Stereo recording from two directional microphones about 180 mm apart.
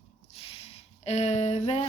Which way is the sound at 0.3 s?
30° left (ahead or behind).